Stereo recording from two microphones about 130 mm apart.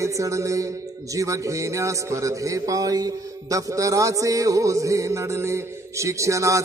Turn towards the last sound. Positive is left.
turn(degrees=-25)  # may be behind; listen again after turning